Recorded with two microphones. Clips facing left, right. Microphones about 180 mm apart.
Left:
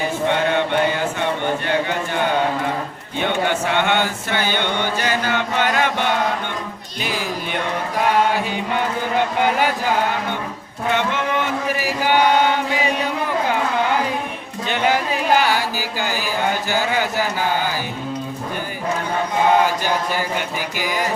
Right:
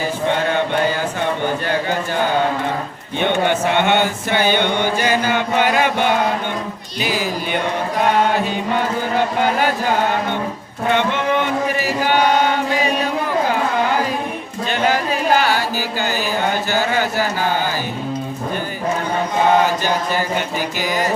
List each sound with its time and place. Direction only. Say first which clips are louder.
1.6 s a sound: right 1 dB; 35° right (ahead or behind)
3.2 s mantra: right 3 dB; 20° right (ahead or behind)
7.0 s music: right 4 dB; 5° right (ahead or behind)
9.4 s speech: even; 15° left (ahead or behind)
11.8 s chant: left 1 dB; 15° left (ahead or behind)
14.7 s music: right 1 dB; 15° left (ahead or behind)
16.6 s speech: right 2 dB; 15° left (ahead or behind)